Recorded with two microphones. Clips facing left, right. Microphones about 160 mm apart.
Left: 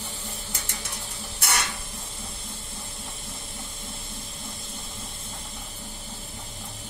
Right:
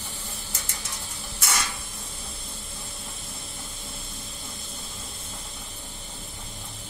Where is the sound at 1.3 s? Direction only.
65° left (ahead or behind).